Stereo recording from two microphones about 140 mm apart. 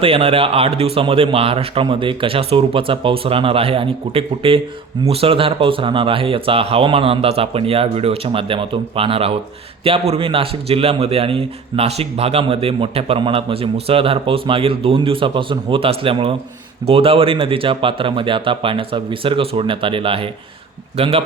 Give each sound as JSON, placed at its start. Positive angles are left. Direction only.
{"t": 0.0, "sound": "a man's voice", "side_deg": -40}